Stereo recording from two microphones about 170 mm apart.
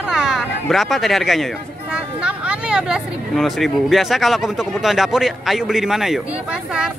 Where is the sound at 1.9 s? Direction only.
5° right (ahead or behind).